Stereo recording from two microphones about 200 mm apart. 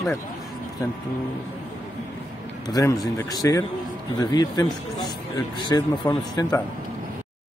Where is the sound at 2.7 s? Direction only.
15° left (ahead or behind).